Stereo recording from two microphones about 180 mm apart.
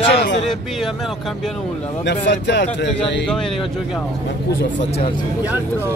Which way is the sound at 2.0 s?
75° left (ahead or behind).